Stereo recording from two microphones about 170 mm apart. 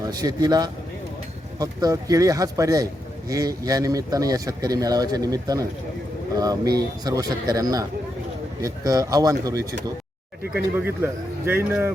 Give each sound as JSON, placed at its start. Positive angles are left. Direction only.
{"t": 0.0, "sound": "a man's voice", "side_deg": -20}